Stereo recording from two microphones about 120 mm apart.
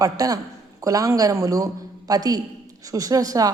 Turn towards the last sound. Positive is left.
turn(degrees=-30)  # may be behind; listen again after turning